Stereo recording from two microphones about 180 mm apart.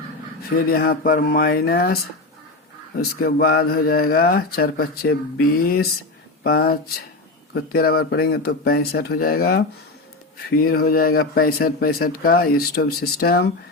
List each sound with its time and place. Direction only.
0.5 s speech: 55° left (ahead or behind)
3.0 s speech: 55° left (ahead or behind)